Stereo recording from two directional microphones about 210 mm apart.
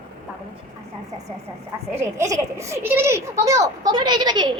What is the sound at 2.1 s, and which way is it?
A child's voice, 15° right (ahead or behind).